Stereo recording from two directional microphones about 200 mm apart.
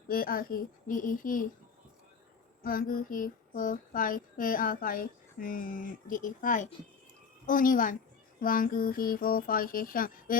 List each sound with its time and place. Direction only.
0.1 s child singing: 45° left (ahead or behind)
2.6 s child singing: 45° left (ahead or behind)